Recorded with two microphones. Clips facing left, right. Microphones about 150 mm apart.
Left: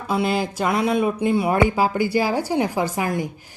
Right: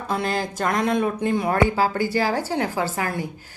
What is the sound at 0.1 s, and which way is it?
A woman's voice, 10° left (ahead or behind).